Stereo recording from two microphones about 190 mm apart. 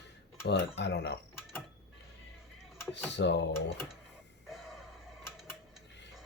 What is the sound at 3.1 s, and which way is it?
Speech, 65° left (ahead or behind).